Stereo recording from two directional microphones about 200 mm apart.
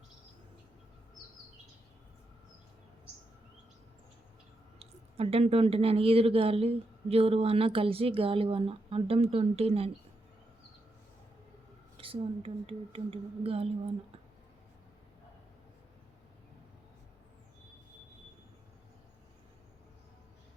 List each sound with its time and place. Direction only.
4.8 s speech: 30° right (ahead or behind)
11.9 s speech: 30° right (ahead or behind)